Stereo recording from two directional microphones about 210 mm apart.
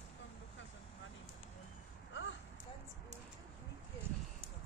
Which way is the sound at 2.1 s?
60° left (ahead or behind).